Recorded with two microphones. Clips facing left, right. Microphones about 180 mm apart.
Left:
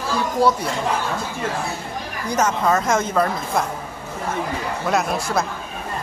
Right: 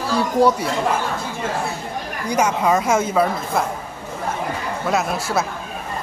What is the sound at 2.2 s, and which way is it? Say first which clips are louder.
Speech: right 1 dB; 10° right (ahead or behind).